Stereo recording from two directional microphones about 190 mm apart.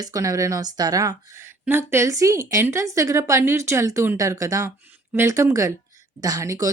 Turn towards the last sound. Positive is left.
turn(degrees=-15)  # may be behind; listen again after turning